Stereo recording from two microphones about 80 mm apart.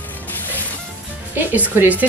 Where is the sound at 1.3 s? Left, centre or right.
Right.